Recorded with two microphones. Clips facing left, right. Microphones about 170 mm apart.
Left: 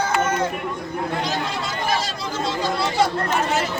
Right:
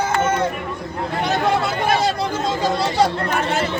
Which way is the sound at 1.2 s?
60° right (ahead or behind).